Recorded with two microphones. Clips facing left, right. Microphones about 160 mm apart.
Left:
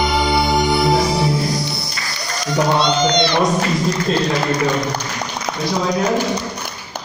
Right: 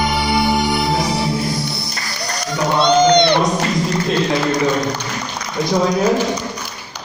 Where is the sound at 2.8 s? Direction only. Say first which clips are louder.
Right 5 dB; 55° right (ahead or behind).